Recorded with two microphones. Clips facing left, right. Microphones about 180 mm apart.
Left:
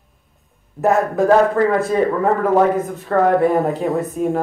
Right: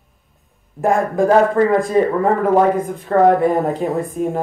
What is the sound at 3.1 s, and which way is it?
Speech, 20° right (ahead or behind).